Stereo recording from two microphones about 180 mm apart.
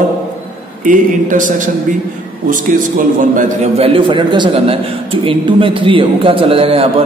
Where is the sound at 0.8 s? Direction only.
45° right (ahead or behind).